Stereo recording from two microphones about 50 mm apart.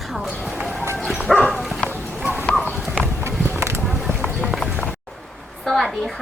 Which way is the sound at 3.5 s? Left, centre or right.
Right.